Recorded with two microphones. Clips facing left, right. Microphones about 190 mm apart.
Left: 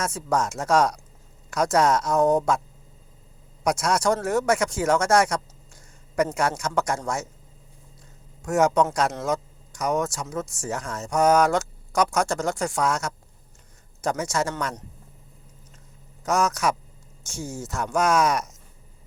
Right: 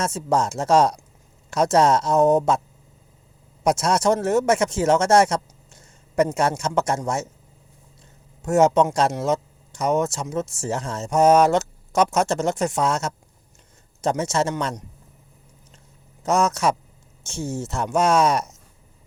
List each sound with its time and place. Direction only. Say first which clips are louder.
0.0 s speech: right 3 dB; 25° right (ahead or behind)
3.6 s speech: right 3 dB; 25° right (ahead or behind)
8.4 s speech: right 3 dB; 25° right (ahead or behind)
16.2 s speech: right 3 dB; 25° right (ahead or behind)